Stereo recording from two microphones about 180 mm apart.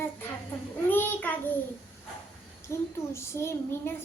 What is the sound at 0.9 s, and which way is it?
Speech, 10° left (ahead or behind).